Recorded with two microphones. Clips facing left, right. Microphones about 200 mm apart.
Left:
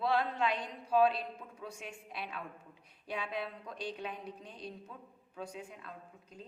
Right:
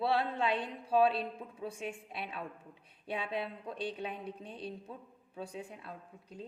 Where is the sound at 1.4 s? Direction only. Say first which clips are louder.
Right 6 dB; 25° right (ahead or behind).